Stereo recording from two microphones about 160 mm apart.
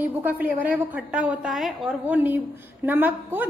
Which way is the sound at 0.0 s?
10° right (ahead or behind).